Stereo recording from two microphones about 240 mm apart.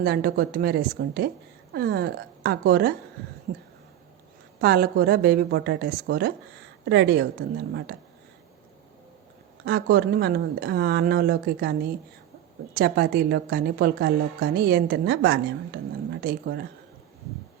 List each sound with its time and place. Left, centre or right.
0.0 s a woman's voice: right
4.6 s a woman's voice: right
9.6 s a woman's voice: right